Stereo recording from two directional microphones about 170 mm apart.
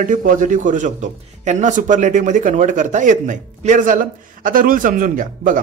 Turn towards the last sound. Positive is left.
turn(degrees=-50)  # may be behind; listen again after turning